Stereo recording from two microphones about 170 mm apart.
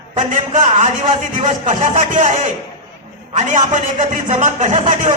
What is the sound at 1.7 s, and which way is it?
A man's voice, 50° right (ahead or behind).